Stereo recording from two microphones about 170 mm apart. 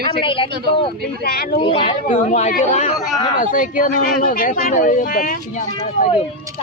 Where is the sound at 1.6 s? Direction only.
30° left (ahead or behind).